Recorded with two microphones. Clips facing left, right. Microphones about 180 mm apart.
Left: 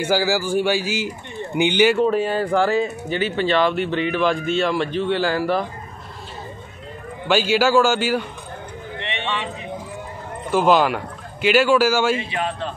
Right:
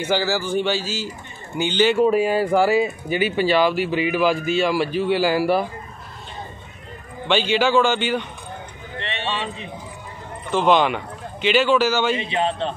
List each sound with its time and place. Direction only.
0.0 s a man's voice: 10° left (ahead or behind)
2.0 s speech: 10° right (ahead or behind)
7.2 s a man's voice: 5° left (ahead or behind)
9.0 s a sound: 15° left (ahead or behind)
10.5 s a man's voice: 5° left (ahead or behind)
12.2 s a man's voice: 25° right (ahead or behind)